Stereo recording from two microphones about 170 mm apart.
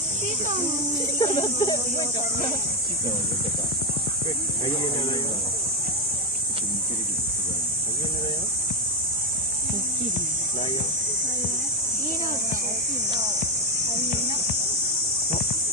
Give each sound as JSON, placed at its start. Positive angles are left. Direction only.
{"t": 1.2, "sound": "speech", "side_deg": 25}